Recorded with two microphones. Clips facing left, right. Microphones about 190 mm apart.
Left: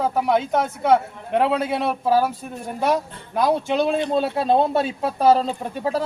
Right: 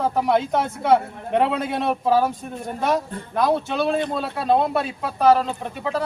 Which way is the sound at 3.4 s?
15° left (ahead or behind).